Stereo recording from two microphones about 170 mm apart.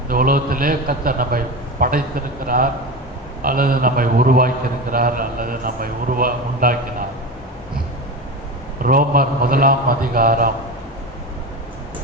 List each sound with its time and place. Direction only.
0.1 s a man's voice: 55° right (ahead or behind)
8.8 s a man's voice: 55° right (ahead or behind)